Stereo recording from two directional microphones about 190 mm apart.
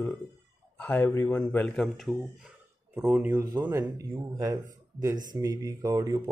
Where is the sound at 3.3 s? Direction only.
20° right (ahead or behind).